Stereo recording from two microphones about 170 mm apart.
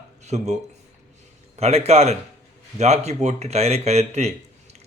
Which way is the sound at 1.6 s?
40° right (ahead or behind).